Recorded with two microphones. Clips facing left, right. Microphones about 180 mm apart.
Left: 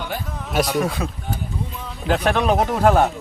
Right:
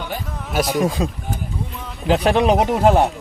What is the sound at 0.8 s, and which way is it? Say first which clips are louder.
Speech: right 3 dB; 20° right (ahead or behind).